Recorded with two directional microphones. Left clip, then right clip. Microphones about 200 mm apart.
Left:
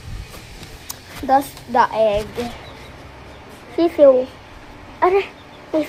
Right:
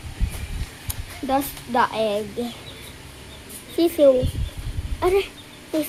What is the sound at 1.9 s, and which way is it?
Speech, 25° right (ahead or behind).